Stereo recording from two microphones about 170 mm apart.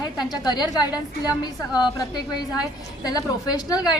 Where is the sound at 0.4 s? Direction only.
25° left (ahead or behind).